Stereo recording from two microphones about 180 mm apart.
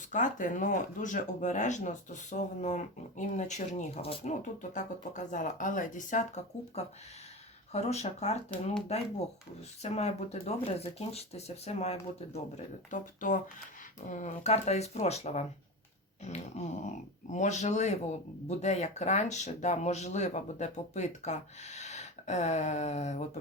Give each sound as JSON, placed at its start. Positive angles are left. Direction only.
{"t": 0.1, "sound": "speech", "side_deg": 45}